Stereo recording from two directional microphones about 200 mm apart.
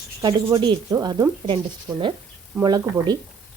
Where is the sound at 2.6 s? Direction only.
20° right (ahead or behind).